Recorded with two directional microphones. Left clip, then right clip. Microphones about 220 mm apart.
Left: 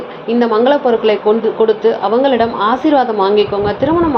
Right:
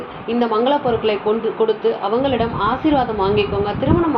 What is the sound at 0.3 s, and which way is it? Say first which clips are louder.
A woman's voice: left 5 dB; 20° left (ahead or behind).